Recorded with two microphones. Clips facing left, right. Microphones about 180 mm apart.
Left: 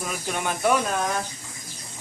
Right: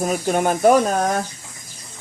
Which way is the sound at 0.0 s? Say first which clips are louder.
Right 10 dB; 40° right (ahead or behind).